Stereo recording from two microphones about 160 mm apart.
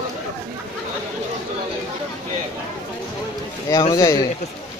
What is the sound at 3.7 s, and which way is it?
Speech, 20° left (ahead or behind).